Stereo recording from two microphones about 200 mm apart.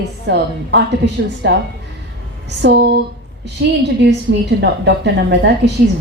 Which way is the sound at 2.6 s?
55° right (ahead or behind).